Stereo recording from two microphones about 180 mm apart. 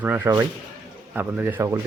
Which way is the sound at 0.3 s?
15° right (ahead or behind).